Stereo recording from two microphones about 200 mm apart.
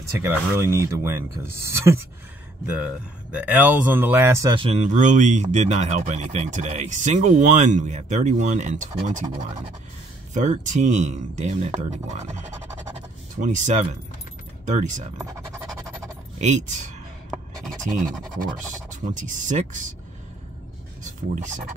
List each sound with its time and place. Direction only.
0.1 s speech: 15° right (ahead or behind); by 15.0 s 40° right (ahead or behind)
15.2 s music: 15° right (ahead or behind)
16.3 s speech: 35° right (ahead or behind)
18.9 s speech: 40° right (ahead or behind)
21.0 s speech: 40° right (ahead or behind)